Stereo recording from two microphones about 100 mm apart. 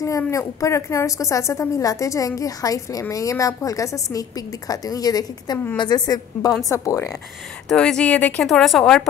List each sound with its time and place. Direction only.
0.0 s a woman's voice: 30° left (ahead or behind)
7.6 s speech: 5° left (ahead or behind)
8.5 s a woman's voice: centre (ahead or behind)